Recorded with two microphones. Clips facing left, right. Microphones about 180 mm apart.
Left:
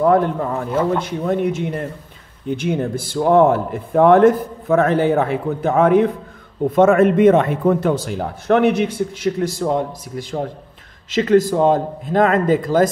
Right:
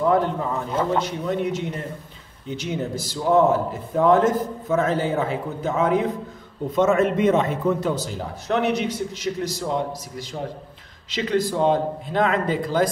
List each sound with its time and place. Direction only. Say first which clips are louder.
0.0 s a man's voice: left 5 dB; 50° left (ahead or behind)